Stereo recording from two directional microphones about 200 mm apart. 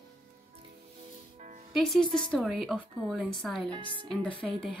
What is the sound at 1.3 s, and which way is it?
Music, 40° right (ahead or behind).